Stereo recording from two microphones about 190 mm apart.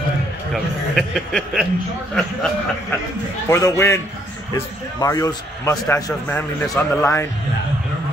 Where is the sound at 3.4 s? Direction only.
15° left (ahead or behind).